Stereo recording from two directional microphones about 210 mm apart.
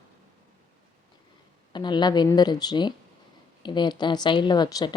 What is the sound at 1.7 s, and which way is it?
A woman's voice, 20° left (ahead or behind).